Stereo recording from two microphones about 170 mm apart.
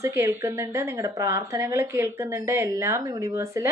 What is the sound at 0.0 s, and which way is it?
A woman's voice, 15° right (ahead or behind).